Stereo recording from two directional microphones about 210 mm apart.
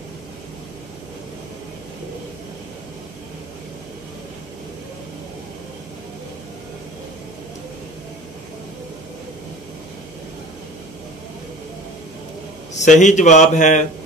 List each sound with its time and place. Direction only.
12.7 s a man's voice: 35° left (ahead or behind)